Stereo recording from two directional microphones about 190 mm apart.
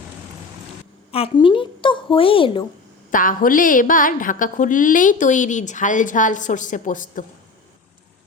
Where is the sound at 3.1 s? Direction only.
45° left (ahead or behind).